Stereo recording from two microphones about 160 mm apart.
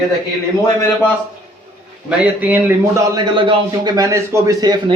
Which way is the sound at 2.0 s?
10° right (ahead or behind).